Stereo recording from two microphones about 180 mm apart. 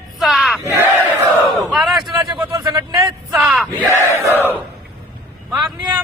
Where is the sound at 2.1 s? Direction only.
25° right (ahead or behind).